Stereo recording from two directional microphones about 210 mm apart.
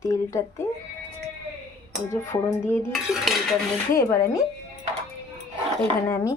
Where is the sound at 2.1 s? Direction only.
15° left (ahead or behind).